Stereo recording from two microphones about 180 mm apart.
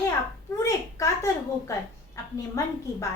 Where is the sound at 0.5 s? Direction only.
20° left (ahead or behind).